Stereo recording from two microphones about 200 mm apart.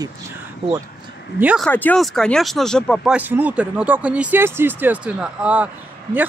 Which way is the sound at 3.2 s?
10° right (ahead or behind).